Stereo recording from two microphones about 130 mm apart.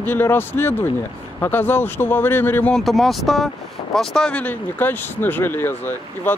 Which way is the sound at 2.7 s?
Centre (ahead or behind).